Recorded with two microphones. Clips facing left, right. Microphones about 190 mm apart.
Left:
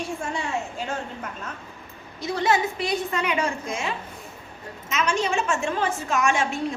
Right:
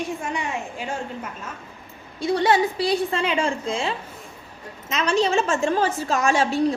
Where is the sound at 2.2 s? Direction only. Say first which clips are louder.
Right 4 dB; 30° right (ahead or behind).